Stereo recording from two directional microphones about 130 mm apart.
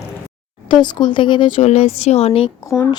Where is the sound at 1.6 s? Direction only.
50° left (ahead or behind).